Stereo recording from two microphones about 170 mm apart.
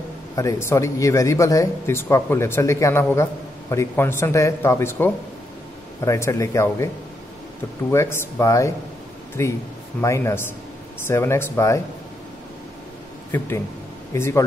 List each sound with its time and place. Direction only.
0.4 s speech: 15° left (ahead or behind)
7.9 s speech: 15° left (ahead or behind)
14.1 s speech: 15° left (ahead or behind)